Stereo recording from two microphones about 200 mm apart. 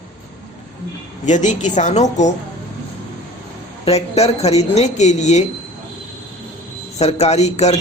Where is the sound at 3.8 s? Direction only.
30° left (ahead or behind).